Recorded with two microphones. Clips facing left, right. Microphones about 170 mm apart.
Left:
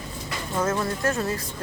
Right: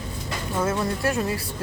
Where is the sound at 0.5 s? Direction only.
15° right (ahead or behind).